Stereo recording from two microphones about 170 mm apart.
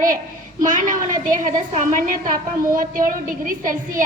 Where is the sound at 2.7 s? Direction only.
55° right (ahead or behind).